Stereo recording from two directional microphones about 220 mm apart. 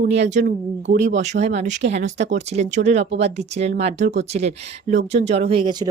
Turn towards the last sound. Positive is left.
turn(degrees=-20)  # may be behind; listen again after turning